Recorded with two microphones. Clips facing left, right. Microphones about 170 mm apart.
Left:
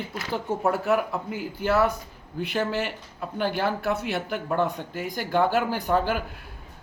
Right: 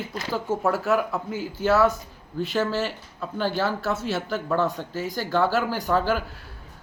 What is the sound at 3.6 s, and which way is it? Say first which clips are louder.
Speech: even; 55° left (ahead or behind).